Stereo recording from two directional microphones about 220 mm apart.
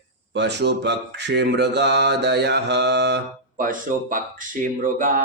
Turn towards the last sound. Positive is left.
turn(degrees=-35)  # may be behind; listen again after turning